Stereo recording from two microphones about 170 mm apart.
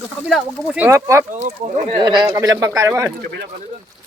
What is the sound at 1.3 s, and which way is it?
Speech, 45° right (ahead or behind).